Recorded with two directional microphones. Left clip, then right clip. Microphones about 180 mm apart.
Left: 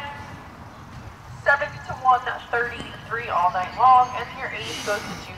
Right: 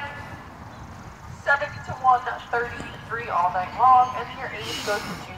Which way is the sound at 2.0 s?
45° right (ahead or behind).